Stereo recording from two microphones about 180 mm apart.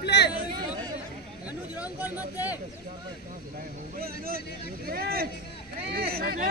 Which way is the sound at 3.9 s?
55° right (ahead or behind).